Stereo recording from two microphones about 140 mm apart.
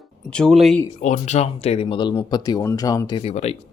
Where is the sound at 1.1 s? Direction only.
50° left (ahead or behind).